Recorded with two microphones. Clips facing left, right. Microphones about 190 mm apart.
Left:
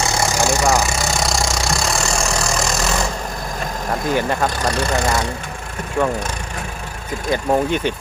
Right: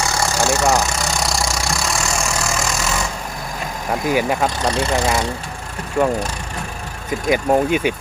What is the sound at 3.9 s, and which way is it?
Speech, 10° right (ahead or behind).